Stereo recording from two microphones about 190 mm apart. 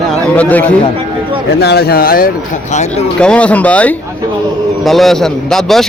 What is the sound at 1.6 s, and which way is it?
Speech, 60° left (ahead or behind).